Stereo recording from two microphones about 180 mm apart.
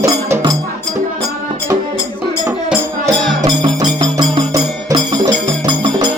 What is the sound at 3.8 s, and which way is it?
Music, 25° right (ahead or behind).